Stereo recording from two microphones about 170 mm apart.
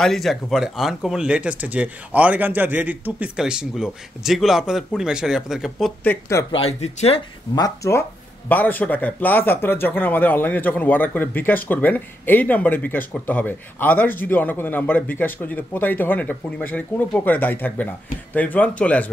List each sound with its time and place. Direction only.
0.0 s speech: centre (ahead or behind)
6.0 s speech: 15° left (ahead or behind)
6.5 s speech: 35° left (ahead or behind)
7.5 s speech: 20° left (ahead or behind)